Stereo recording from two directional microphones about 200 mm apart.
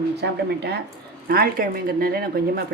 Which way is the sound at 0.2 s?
55° right (ahead or behind).